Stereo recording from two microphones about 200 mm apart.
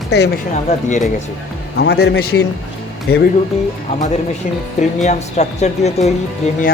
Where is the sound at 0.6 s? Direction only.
35° left (ahead or behind).